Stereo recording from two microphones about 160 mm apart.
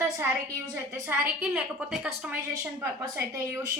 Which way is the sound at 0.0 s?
15° right (ahead or behind).